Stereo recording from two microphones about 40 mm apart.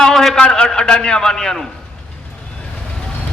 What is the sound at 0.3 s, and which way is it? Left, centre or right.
A man's voice, left.